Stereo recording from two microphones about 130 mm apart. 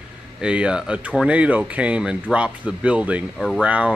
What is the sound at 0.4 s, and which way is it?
Speech, 10° right (ahead or behind).